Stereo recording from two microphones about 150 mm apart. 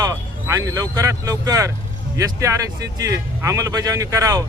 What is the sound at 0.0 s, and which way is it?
Speech, 20° right (ahead or behind).